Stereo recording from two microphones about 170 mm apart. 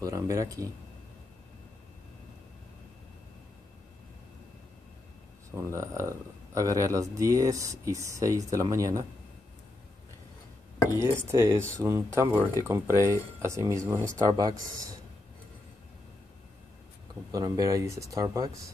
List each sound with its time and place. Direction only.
0.0 s speech: 20° right (ahead or behind)
5.5 s speech: 15° right (ahead or behind)
11.0 s speech: 15° right (ahead or behind)
17.3 s speech: 20° right (ahead or behind)